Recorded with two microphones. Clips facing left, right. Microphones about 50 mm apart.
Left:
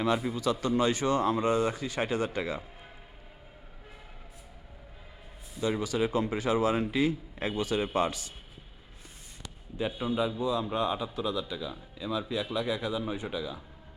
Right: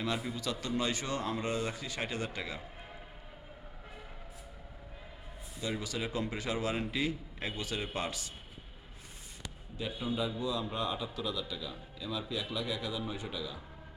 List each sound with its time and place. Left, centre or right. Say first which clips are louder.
0.0 s a man's voice: left 7 dB; left
5.5 s a man's voice: left 7 dB; left
5.8 s a man's voice: left 8 dB; left
9.7 s a man's voice: left 6 dB; left